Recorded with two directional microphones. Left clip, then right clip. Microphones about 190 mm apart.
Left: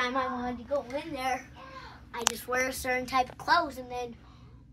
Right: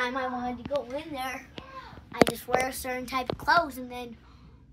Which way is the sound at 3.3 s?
45° right (ahead or behind).